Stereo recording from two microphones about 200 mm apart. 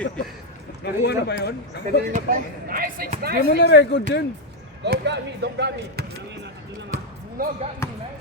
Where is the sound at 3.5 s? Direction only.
55° left (ahead or behind).